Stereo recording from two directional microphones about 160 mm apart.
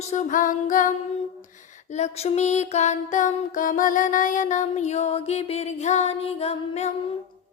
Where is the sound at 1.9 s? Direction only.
40° left (ahead or behind).